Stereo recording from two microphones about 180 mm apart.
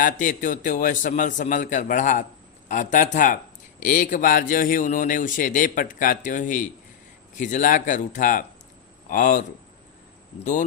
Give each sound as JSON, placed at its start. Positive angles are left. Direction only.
{"t": 0.0, "sound": "a man's voice", "side_deg": 50}